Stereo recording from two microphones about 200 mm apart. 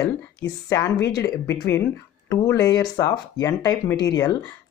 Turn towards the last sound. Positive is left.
turn(degrees=20)  # may be behind; listen again after turning